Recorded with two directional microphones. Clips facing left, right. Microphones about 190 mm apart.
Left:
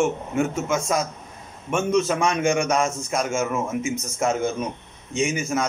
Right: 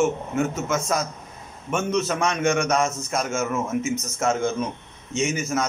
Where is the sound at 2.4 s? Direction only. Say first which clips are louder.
Right 2 dB; 10° left (ahead or behind).